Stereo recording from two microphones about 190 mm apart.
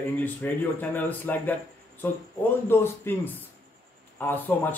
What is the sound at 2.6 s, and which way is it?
Speech, 10° left (ahead or behind).